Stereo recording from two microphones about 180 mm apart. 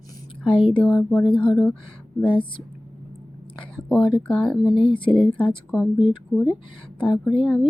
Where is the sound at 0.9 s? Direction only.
5° right (ahead or behind).